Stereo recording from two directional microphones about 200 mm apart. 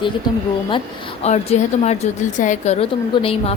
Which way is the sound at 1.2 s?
35° left (ahead or behind).